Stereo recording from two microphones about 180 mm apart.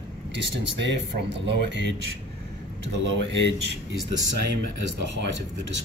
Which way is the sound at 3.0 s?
85° right.